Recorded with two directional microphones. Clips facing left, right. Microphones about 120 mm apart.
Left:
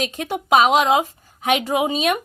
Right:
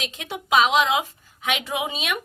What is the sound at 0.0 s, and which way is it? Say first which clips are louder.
A woman's voice: left 8 dB; 45° left (ahead or behind).